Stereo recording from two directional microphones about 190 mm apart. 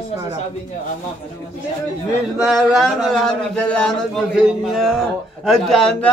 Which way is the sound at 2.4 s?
Centre (ahead or behind).